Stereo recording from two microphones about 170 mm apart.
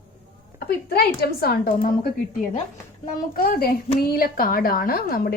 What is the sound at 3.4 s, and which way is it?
A woman's voice, 60° left (ahead or behind).